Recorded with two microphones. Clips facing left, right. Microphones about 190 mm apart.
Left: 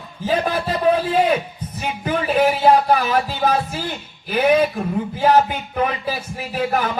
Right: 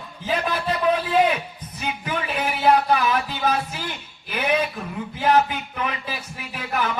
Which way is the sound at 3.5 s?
30° left (ahead or behind).